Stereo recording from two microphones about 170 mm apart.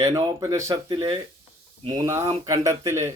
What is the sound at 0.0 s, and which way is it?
Speech, 20° right (ahead or behind).